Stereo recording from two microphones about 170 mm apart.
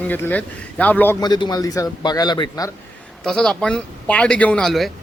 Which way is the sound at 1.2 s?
25° left (ahead or behind).